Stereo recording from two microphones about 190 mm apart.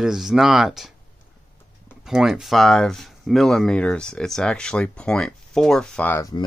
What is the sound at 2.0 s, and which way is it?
Speech, centre (ahead or behind).